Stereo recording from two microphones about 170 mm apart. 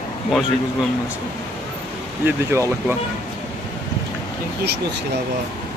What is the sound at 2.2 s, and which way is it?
Speech, 15° right (ahead or behind).